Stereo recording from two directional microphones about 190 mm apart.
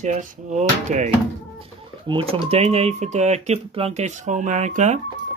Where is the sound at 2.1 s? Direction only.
30° right (ahead or behind).